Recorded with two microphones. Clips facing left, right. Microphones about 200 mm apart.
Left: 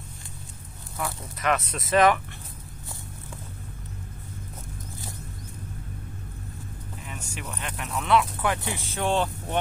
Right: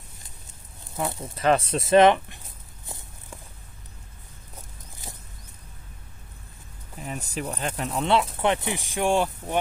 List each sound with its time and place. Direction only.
0.9 s speech: 25° right (ahead or behind)
7.0 s speech: 35° right (ahead or behind); by 9.6 s 10° right (ahead or behind)